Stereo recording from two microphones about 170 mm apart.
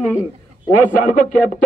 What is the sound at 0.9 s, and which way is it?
Speech, 50° left (ahead or behind).